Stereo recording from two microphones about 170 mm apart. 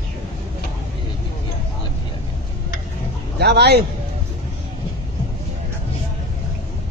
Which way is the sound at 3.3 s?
75° right (ahead or behind).